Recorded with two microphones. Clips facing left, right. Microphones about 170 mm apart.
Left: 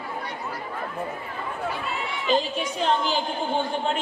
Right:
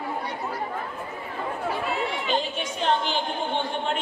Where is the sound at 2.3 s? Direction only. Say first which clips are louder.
Left 3 dB; 35° left (ahead or behind).